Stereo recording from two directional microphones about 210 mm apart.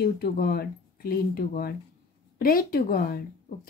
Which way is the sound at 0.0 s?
45° left (ahead or behind).